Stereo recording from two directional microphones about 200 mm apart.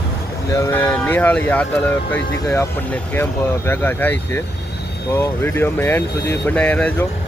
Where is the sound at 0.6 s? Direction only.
10° left (ahead or behind).